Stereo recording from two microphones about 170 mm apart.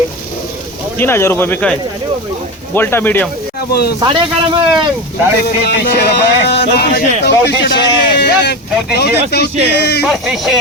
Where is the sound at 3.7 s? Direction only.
70° left (ahead or behind).